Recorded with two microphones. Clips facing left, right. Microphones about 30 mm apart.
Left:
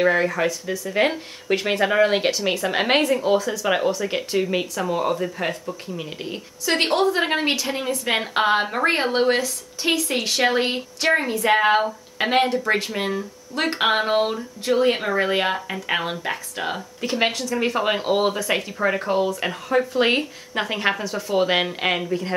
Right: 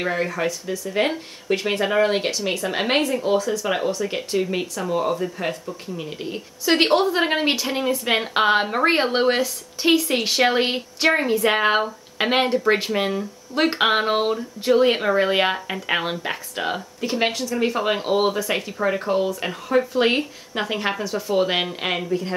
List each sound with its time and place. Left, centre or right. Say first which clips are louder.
0.0 s speech: left 4 dB; centre
6.6 s a woman's voice: right 2 dB; centre